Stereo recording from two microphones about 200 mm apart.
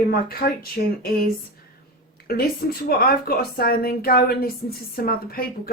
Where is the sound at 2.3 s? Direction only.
50° left (ahead or behind).